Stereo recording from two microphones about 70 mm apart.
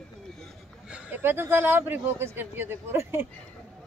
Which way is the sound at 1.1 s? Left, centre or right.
Right.